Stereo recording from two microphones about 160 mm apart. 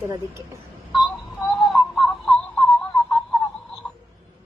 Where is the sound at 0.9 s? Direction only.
Centre (ahead or behind).